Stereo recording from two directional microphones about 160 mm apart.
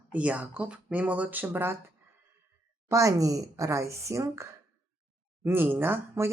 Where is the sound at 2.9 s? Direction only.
20° right (ahead or behind).